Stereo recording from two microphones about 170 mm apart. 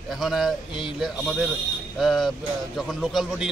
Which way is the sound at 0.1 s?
Centre (ahead or behind).